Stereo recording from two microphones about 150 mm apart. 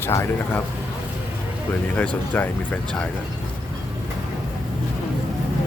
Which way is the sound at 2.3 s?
10° left (ahead or behind).